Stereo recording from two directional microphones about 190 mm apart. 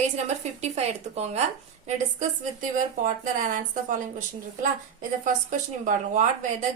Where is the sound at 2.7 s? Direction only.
45° right (ahead or behind).